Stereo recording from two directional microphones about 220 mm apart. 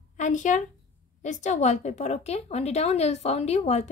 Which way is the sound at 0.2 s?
35° left (ahead or behind).